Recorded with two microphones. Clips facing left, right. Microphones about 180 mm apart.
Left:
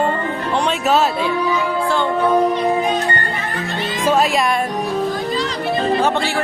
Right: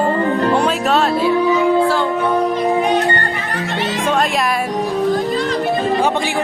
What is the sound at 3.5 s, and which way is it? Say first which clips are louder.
Music: right 3 dB; 80° right.